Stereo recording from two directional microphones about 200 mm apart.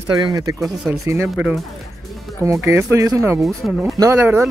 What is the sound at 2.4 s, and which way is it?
Speech, 15° right (ahead or behind).